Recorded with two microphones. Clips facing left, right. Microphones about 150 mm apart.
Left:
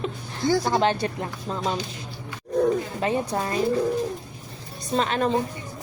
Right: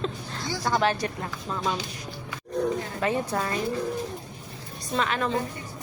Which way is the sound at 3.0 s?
25° left (ahead or behind).